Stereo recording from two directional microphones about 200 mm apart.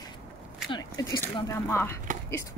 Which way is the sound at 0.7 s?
20° left (ahead or behind).